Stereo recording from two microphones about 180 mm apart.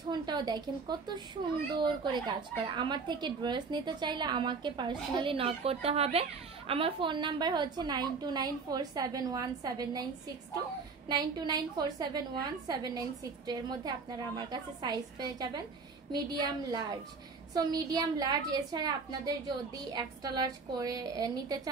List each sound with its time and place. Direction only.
0.1 s speech: 25° right (ahead or behind)
11.1 s speech: 20° right (ahead or behind)